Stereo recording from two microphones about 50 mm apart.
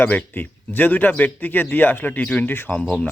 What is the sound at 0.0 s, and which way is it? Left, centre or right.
Speech, left.